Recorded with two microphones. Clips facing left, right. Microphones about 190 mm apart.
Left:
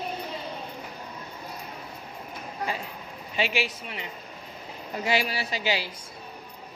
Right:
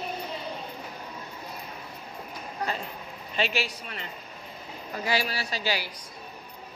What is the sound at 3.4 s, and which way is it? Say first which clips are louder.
Speech: left 1 dB; 15° left (ahead or behind).